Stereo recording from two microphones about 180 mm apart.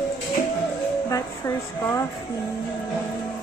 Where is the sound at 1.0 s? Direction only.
20° left (ahead or behind).